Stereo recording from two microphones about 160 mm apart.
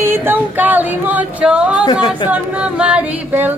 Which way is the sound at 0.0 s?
15° right (ahead or behind).